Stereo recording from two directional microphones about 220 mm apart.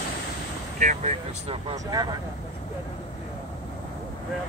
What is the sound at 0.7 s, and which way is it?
Speech, 35° right (ahead or behind).